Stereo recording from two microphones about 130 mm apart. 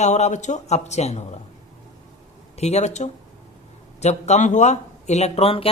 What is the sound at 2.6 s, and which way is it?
Speech, 55° left (ahead or behind).